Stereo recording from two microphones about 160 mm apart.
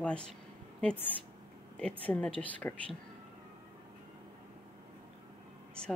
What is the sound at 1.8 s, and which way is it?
Speech, 5° left (ahead or behind).